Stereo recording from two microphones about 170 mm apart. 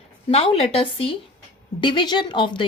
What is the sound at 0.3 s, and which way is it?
A woman's voice, 35° left (ahead or behind).